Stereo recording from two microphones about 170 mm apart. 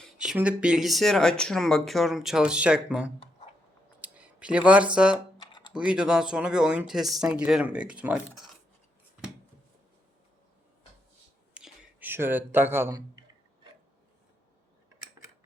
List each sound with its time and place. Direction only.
0.0 s speech: 5° right (ahead or behind)
5.4 s typing: 25° left (ahead or behind)
5.7 s speech: 5° right (ahead or behind)
11.5 s a sound: 10° right (ahead or behind)